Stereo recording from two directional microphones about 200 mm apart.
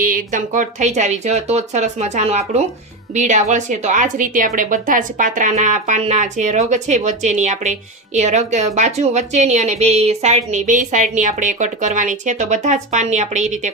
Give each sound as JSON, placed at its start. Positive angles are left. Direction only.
{"t": 0.0, "sound": "a woman's voice", "side_deg": -45}